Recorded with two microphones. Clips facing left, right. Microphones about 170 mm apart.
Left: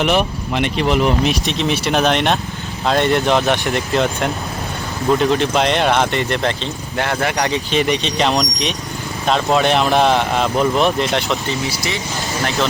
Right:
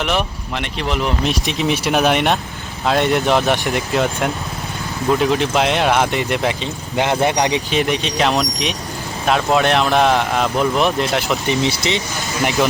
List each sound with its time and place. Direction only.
0.0 s speech: 5° left (ahead or behind)
1.5 s speech: 10° right (ahead or behind)
7.7 s speech: 5° right (ahead or behind)
11.4 s speech: 20° right (ahead or behind)